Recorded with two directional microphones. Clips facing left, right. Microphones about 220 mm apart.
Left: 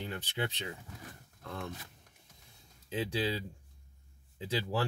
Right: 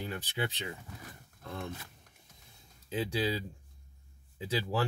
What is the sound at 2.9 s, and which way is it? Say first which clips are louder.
Speech: right 1 dB; 10° right (ahead or behind).